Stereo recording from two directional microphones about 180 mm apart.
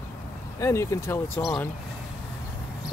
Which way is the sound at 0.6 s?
15° left (ahead or behind).